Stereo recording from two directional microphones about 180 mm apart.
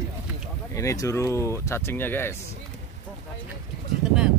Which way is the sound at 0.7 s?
20° left (ahead or behind).